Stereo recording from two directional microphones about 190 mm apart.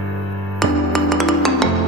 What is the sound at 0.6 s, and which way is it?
Music, centre (ahead or behind).